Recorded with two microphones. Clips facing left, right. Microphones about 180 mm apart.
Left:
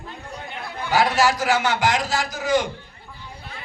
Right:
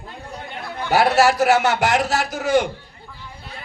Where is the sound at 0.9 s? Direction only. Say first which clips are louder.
Right 3 dB; 65° right (ahead or behind).